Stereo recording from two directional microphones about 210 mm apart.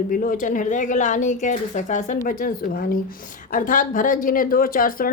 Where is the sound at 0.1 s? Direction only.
40° left (ahead or behind).